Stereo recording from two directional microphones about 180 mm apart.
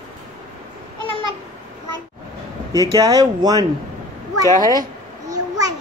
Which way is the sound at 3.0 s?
20° right (ahead or behind).